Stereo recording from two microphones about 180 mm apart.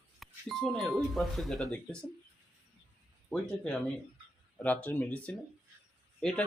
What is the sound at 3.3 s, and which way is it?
Speech, 5° left (ahead or behind).